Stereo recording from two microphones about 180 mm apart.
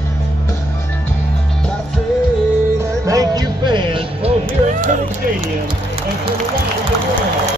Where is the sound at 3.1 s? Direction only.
20° right (ahead or behind).